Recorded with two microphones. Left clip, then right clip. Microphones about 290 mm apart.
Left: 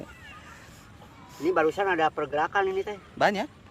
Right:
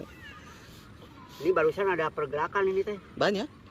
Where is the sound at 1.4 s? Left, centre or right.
Left.